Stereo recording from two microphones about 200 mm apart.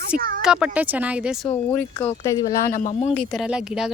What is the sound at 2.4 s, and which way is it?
Speech, 40° left (ahead or behind).